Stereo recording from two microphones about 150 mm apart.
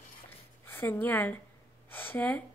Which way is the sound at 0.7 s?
15° left (ahead or behind).